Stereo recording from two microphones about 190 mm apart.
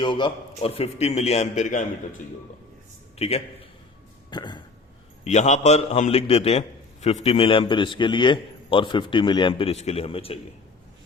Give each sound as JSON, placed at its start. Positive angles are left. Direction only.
{"t": 0.0, "sound": "a man's voice", "side_deg": 25}
{"t": 3.2, "sound": "a man's voice", "side_deg": 30}
{"t": 4.3, "sound": "a sound", "side_deg": 25}
{"t": 5.2, "sound": "a man's voice", "side_deg": 35}